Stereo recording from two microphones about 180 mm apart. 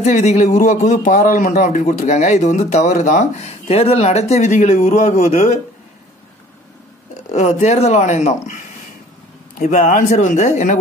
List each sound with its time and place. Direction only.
0.0 s a man's voice: 40° left (ahead or behind)
7.2 s a man's voice: 40° left (ahead or behind)
9.6 s speech: 45° left (ahead or behind)